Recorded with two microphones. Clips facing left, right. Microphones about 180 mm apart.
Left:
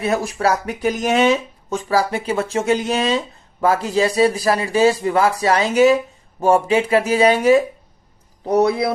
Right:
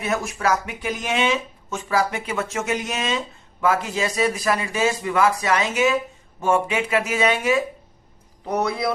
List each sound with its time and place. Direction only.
0.0 s speech: 30° left (ahead or behind)